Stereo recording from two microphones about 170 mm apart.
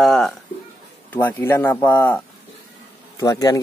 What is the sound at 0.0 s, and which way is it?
Speech, centre (ahead or behind).